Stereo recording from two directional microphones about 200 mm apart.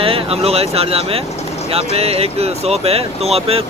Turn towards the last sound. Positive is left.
turn(degrees=-30)  # may be behind; listen again after turning